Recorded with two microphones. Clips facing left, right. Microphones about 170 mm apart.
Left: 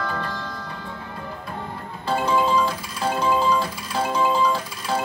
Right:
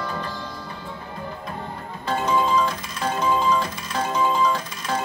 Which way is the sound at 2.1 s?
10° left (ahead or behind).